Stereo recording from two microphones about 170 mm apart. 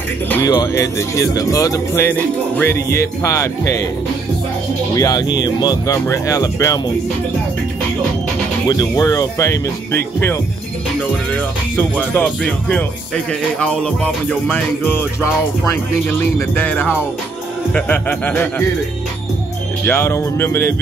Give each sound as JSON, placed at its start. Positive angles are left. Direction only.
{"t": 0.5, "sound": "speech", "side_deg": 20}
{"t": 4.9, "sound": "speech", "side_deg": 20}
{"t": 8.6, "sound": "speech", "side_deg": 20}
{"t": 19.9, "sound": "speech", "side_deg": 15}